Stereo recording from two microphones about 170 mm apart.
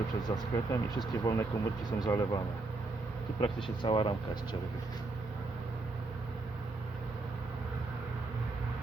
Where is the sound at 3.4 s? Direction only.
30° left (ahead or behind).